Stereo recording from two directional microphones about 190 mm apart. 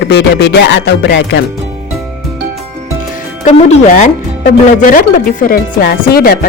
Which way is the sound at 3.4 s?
40° left (ahead or behind).